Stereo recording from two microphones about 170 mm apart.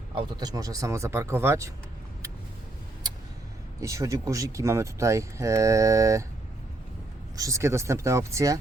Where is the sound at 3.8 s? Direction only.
20° right (ahead or behind).